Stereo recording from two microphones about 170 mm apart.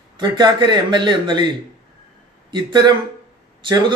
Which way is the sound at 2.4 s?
25° right (ahead or behind).